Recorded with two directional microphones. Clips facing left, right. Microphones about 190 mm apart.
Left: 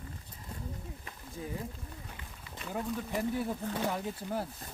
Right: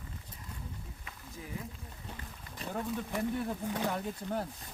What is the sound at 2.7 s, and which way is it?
Speech, 5° left (ahead or behind).